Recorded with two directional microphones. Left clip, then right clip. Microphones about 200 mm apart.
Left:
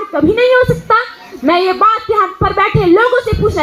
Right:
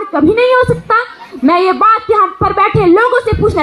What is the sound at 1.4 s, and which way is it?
Speech, 25° right (ahead or behind).